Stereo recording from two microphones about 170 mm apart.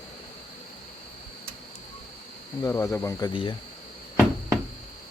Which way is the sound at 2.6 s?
20° left (ahead or behind).